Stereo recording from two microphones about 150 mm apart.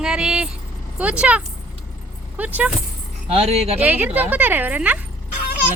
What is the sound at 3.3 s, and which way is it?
Speech, 45° right (ahead or behind).